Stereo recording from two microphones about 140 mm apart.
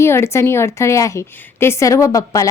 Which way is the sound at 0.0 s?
20° left (ahead or behind).